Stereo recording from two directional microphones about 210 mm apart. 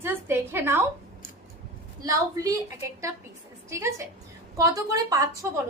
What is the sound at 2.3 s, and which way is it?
Speech, 15° right (ahead or behind).